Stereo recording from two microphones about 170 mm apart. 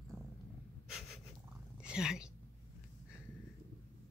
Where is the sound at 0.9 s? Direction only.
Centre (ahead or behind).